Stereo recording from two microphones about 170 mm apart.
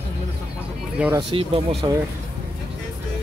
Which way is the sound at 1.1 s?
30° right (ahead or behind).